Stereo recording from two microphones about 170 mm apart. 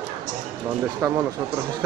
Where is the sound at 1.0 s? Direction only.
15° right (ahead or behind).